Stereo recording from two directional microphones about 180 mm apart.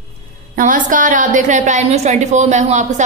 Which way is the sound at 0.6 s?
45° right (ahead or behind).